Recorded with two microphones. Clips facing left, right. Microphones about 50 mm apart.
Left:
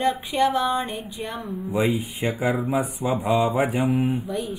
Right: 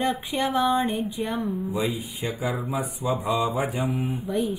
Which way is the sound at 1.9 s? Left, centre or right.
Left.